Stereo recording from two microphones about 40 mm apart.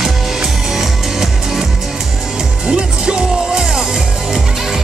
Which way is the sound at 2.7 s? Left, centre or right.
Right.